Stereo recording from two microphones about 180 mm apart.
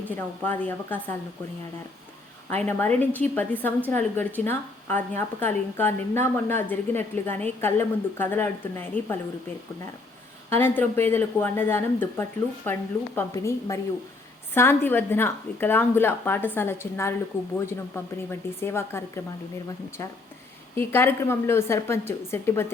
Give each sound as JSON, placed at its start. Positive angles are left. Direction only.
{"t": 0.4, "sound": "a woman's voice", "side_deg": 10}
{"t": 2.5, "sound": "a woman's voice", "side_deg": 10}
{"t": 10.5, "sound": "a woman's voice", "side_deg": 10}